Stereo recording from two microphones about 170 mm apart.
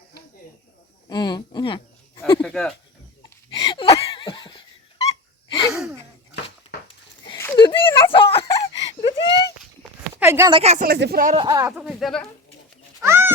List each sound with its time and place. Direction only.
1.1 s speech: 25° left (ahead or behind)
2.4 s speech: 5° left (ahead or behind)
3.5 s a sound: 30° left (ahead or behind)
4.0 s laughter: 30° left (ahead or behind)
7.5 s a sound: 30° left (ahead or behind)
8.7 s whimper: 30° left (ahead or behind)
10.2 s a sound: 15° right (ahead or behind)
10.5 s speech: 40° right (ahead or behind)
10.8 s speech: 65° right (ahead or behind)
11.3 s speech: 20° right (ahead or behind)
11.8 s speech: centre (ahead or behind)
13.0 s cat: 15° right (ahead or behind)